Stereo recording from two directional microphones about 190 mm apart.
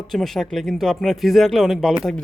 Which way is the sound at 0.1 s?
Centre (ahead or behind).